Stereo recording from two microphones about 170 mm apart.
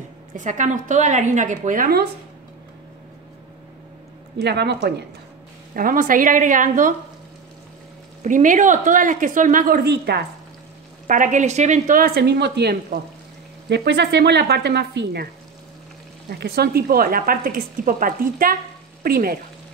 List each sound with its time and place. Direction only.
0.3 s speech: 50° right (ahead or behind)
4.4 s speech: 80° right
5.8 s speech: 55° right (ahead or behind)
8.2 s speech: 50° right (ahead or behind); by 10.2 s 75° right (ahead or behind)
11.1 s speech: 50° right (ahead or behind); by 12.7 s 80° right
13.7 s speech: 90° right
16.3 s speech: 70° right (ahead or behind)